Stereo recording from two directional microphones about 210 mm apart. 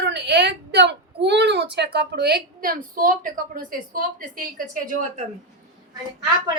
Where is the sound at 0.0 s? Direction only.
55° right (ahead or behind); by 5.2 s 40° right (ahead or behind).